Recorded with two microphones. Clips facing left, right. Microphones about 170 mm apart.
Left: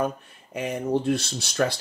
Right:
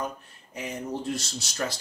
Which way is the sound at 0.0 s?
55° left (ahead or behind).